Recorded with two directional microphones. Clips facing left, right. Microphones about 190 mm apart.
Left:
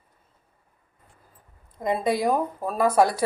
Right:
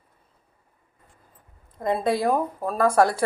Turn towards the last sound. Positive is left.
turn(degrees=5)  # may be behind; listen again after turning